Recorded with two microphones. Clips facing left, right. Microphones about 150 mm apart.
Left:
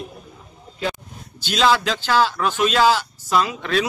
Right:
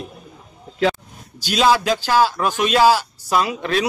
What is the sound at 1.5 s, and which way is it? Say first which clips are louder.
Speech: right 2 dB; 15° right (ahead or behind).